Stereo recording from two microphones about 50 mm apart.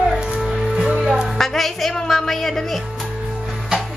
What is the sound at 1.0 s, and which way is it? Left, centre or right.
Music, centre.